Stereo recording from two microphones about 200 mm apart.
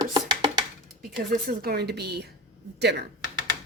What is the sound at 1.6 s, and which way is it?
Speech, 50° right (ahead or behind).